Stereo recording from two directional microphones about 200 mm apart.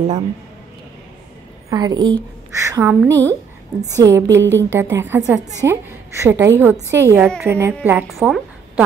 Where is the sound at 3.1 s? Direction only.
10° left (ahead or behind).